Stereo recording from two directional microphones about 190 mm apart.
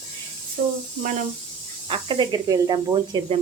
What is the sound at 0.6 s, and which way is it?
Speech, 35° right (ahead or behind).